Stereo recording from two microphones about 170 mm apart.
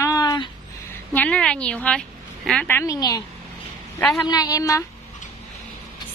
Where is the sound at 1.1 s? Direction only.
5° left (ahead or behind).